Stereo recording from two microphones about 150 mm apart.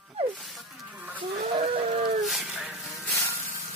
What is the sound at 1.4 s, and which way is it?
Livestock, 40° right (ahead or behind).